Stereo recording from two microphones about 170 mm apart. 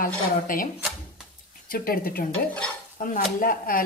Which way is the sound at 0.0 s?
55° left (ahead or behind).